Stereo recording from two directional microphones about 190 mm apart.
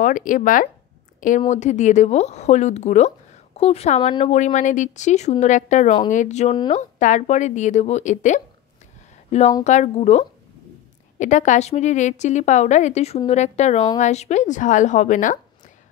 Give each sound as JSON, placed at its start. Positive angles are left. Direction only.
{"t": 0.0, "sound": "a woman's voice", "side_deg": 45}